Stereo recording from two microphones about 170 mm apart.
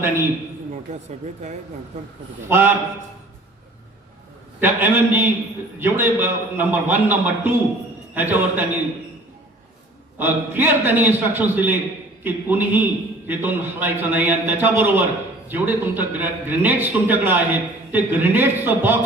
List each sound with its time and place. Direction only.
0.9 s speech: 45° right (ahead or behind)
2.5 s a man's voice: 10° right (ahead or behind)
4.6 s a man's voice: 10° right (ahead or behind)
10.2 s a man's voice: 10° right (ahead or behind)